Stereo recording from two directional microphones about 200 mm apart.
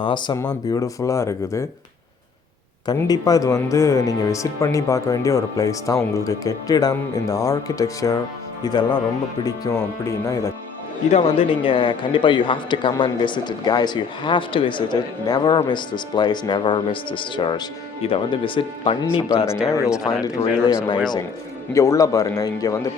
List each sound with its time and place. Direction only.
0.0 s a man's voice: 25° left (ahead or behind)
2.8 s a man's voice: 20° left (ahead or behind)
11.1 s a man's voice: 25° left (ahead or behind)